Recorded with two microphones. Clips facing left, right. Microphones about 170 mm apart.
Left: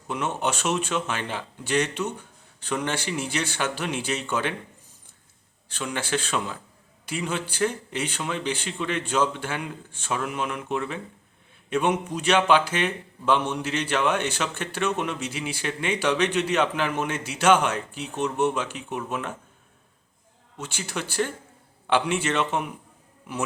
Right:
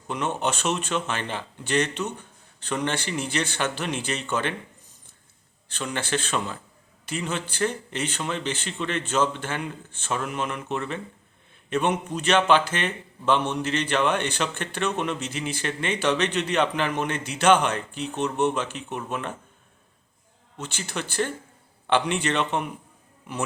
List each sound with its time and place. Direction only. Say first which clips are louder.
0.1 s a man's voice: even; 10° left (ahead or behind)
5.6 s a man's voice: even; 10° left (ahead or behind)
20.6 s a man's voice: even; 10° left (ahead or behind)